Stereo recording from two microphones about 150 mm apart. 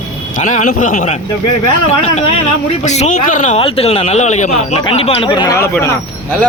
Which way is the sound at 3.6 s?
40° left (ahead or behind).